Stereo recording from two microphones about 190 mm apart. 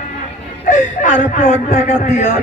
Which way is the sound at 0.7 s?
40° left (ahead or behind).